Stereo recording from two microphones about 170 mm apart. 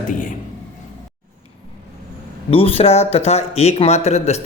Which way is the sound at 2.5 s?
35° left (ahead or behind).